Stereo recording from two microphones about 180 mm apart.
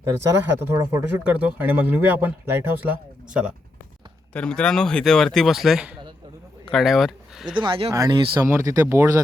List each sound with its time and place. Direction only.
0.6 s speech: 10° right (ahead or behind)
4.4 s speech: 5° left (ahead or behind)
7.5 s speech: 30° right (ahead or behind)